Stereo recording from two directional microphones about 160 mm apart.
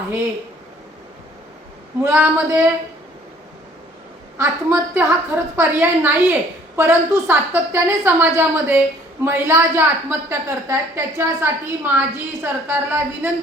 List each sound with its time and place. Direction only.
2.0 s a woman's voice: 15° right (ahead or behind)
4.4 s a woman's voice: 10° right (ahead or behind)